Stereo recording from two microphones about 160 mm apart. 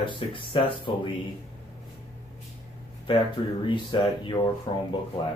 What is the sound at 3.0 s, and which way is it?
Speech, 30° left (ahead or behind).